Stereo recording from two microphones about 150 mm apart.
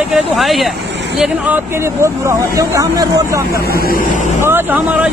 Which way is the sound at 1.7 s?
20° right (ahead or behind).